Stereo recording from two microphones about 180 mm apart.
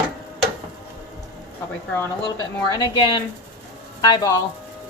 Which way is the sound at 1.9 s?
20° left (ahead or behind).